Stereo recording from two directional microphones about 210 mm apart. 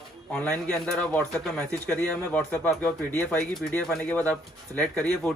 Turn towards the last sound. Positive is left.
turn(degrees=5)  # may be behind; listen again after turning